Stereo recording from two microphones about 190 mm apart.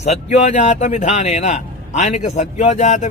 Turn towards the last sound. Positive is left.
turn(degrees=35)  # may be behind; listen again after turning